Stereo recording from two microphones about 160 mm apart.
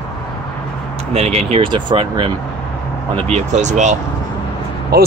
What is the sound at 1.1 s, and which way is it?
Speech, 40° right (ahead or behind).